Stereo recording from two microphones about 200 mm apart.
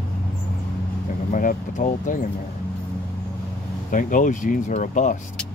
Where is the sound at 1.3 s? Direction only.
40° left (ahead or behind).